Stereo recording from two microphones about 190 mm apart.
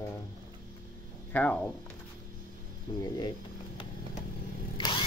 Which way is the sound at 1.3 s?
10° left (ahead or behind).